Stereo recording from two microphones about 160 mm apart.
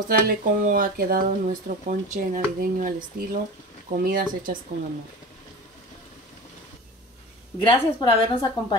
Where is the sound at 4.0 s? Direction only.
65° right (ahead or behind).